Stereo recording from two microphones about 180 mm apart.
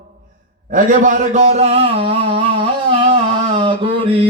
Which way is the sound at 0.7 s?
45° right (ahead or behind).